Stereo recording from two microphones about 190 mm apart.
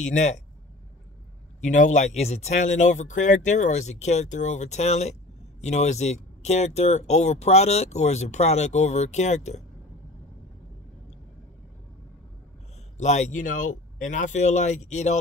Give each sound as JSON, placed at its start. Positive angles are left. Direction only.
{"t": 0.0, "sound": "speech", "side_deg": 40}
{"t": 1.6, "sound": "speech", "side_deg": 40}
{"t": 12.9, "sound": "speech", "side_deg": 40}